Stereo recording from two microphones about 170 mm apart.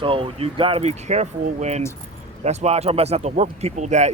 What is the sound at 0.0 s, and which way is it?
Speech, 30° right (ahead or behind).